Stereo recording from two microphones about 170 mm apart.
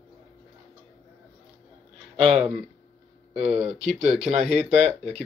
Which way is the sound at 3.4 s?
40° right (ahead or behind).